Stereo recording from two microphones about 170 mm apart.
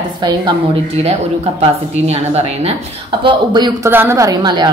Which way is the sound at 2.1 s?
40° right (ahead or behind).